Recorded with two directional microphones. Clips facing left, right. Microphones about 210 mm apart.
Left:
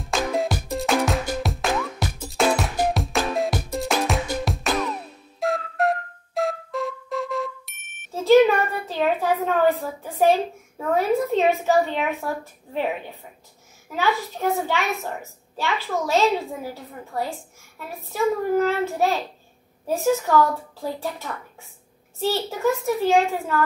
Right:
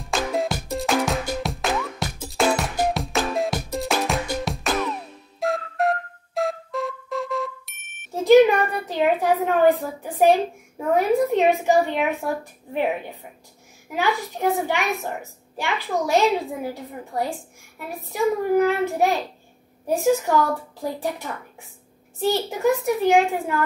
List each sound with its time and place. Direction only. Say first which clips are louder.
0.0 s music: even; centre (ahead or behind)
5.4 s flute: even; centre (ahead or behind)
8.1 s a child's voice: right 1 dB; 15° right (ahead or behind)
13.8 s a woman's voice: even; 15° right (ahead or behind)